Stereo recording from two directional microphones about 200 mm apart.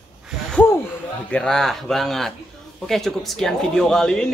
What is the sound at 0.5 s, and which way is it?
Speech, 10° left (ahead or behind).